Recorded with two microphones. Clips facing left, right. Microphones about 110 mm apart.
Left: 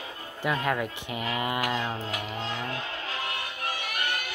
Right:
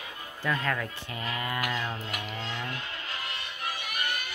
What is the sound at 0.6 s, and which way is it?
Speech, 15° left (ahead or behind).